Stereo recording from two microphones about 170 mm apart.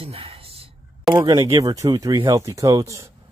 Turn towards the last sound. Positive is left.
turn(degrees=-20)  # may be behind; listen again after turning